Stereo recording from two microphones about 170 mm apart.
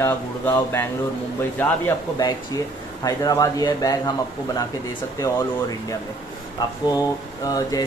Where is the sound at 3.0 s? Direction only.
20° left (ahead or behind).